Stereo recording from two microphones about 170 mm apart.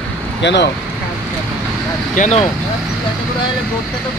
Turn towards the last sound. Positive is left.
turn(degrees=45)  # may be behind; listen again after turning